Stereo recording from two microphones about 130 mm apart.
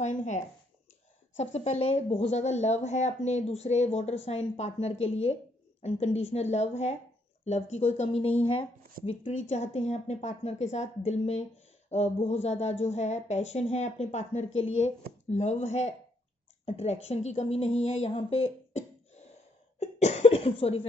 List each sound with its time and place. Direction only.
0.0 s speech: 65° left (ahead or behind)
1.4 s a woman's voice: 60° left (ahead or behind)
19.8 s cough: 60° left (ahead or behind)